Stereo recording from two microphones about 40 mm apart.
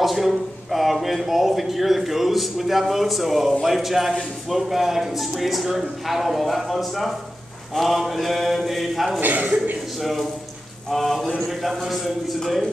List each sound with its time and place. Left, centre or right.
0.0 s speech: centre
9.2 s a man's voice: right
9.9 s speech: centre